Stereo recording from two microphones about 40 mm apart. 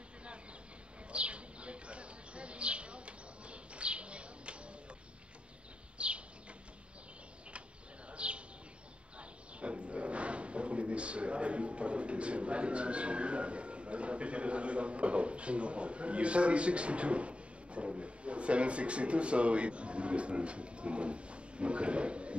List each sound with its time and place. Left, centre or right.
1.1 s bird: right
5.9 s bird: right
8.1 s bird: right
9.2 s wild animals: right